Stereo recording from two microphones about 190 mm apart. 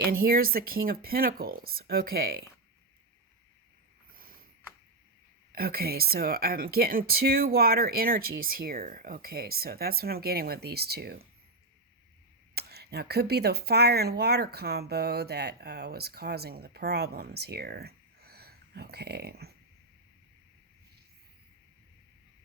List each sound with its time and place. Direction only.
0.0 s speech: 50° right (ahead or behind)
4.2 s a sound: 50° right (ahead or behind)
5.5 s speech: 50° right (ahead or behind)
12.5 s speech: 55° right (ahead or behind)